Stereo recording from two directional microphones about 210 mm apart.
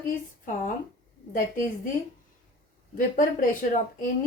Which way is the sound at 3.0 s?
40° left (ahead or behind).